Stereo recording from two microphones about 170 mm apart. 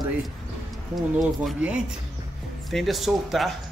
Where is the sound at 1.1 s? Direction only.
Centre (ahead or behind).